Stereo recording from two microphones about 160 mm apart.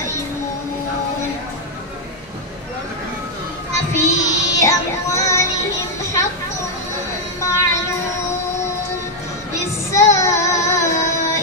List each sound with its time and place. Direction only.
3.7 s child singing: 20° left (ahead or behind)
7.3 s child singing: 20° left (ahead or behind)
9.5 s child singing: 20° left (ahead or behind)